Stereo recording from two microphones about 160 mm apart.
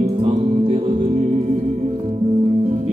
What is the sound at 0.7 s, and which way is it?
Music, 40° right (ahead or behind).